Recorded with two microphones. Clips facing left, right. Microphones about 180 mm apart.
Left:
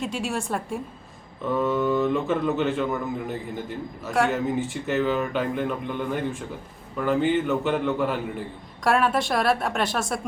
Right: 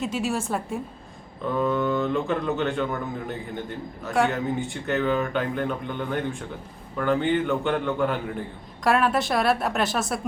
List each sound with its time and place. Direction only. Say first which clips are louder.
0.0 s speech: right 2 dB; centre (ahead or behind)